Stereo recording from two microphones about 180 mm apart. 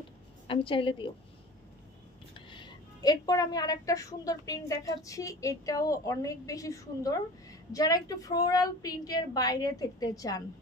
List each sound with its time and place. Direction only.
0.5 s a woman's voice: 30° left (ahead or behind)
2.3 s a woman's voice: 25° left (ahead or behind)